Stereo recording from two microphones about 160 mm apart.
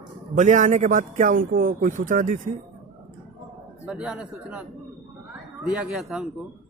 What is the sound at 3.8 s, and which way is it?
Speech, 5° right (ahead or behind).